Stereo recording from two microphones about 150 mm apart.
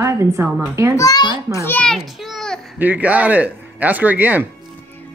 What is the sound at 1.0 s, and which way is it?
Speech, 25° left (ahead or behind).